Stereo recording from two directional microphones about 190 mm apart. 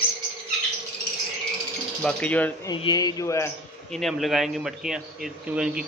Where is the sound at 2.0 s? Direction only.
5° left (ahead or behind).